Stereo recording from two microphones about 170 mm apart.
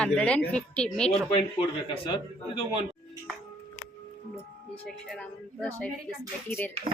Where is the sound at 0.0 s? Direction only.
5° left (ahead or behind).